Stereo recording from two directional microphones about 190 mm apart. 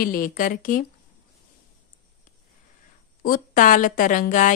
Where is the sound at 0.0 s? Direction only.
50° left (ahead or behind).